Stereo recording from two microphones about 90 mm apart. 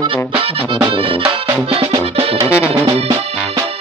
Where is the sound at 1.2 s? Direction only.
90° right.